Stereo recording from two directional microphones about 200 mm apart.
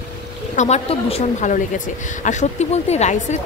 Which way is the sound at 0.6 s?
30° left (ahead or behind).